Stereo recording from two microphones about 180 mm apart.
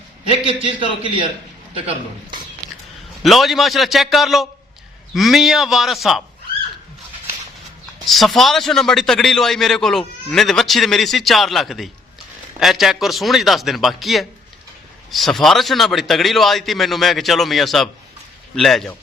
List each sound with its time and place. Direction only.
0.3 s a man's voice: 30° right (ahead or behind)
3.2 s a man's voice: centre (ahead or behind)
8.0 s a man's voice: centre (ahead or behind)